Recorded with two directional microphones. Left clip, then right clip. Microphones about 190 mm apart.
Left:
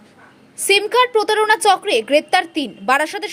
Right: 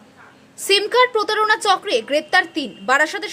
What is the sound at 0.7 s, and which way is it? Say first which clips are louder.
A woman's voice: left 1 dB; 15° left (ahead or behind).